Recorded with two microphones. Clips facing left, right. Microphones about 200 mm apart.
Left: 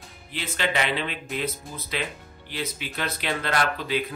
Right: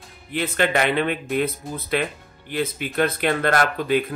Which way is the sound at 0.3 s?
55° right (ahead or behind).